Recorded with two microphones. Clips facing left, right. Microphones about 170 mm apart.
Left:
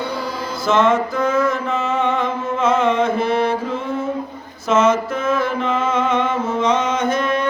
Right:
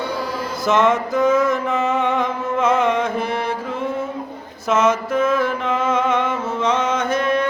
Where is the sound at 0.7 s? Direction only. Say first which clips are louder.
Left 1 dB; 20° right (ahead or behind).